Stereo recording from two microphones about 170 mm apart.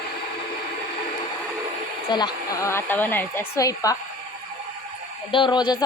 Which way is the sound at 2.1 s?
25° left (ahead or behind).